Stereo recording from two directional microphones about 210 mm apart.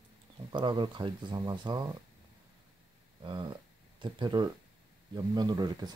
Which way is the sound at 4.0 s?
20° right (ahead or behind).